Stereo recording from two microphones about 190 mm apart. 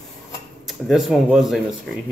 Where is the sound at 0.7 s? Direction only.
Centre (ahead or behind).